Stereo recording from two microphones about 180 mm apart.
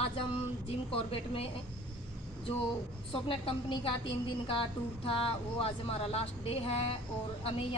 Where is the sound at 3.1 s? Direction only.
30° left (ahead or behind).